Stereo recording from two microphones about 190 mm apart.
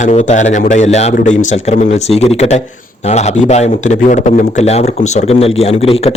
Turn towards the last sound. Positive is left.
turn(degrees=30)  # may be behind; listen again after turning